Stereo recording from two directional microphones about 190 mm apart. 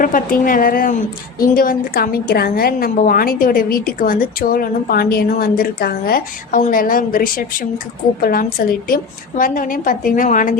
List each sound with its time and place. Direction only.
0.0 s a woman's voice: 45° left (ahead or behind)